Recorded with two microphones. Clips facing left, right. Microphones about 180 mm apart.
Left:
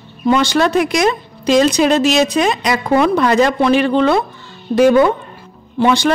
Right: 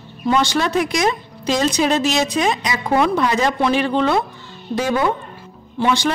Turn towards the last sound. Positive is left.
turn(degrees=70)  # may be behind; listen again after turning